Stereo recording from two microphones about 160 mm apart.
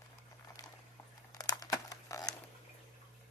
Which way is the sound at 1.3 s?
25° left (ahead or behind).